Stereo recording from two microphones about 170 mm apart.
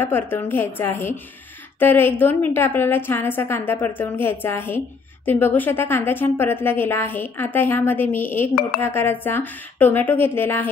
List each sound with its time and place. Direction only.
0.0 s a woman's voice: 15° left (ahead or behind)